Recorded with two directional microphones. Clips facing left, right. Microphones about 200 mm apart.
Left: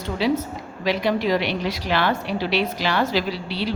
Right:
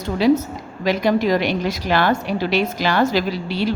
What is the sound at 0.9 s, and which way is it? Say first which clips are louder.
A woman's voice: right 3 dB; 45° right (ahead or behind).